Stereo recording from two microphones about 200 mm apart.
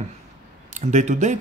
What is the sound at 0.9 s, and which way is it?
Speech, 35° right (ahead or behind).